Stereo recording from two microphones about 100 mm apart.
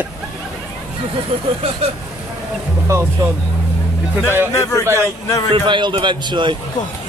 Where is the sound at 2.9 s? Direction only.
30° right (ahead or behind).